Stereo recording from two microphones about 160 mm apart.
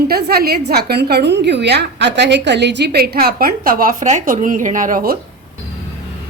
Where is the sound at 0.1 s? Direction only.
75° right (ahead or behind).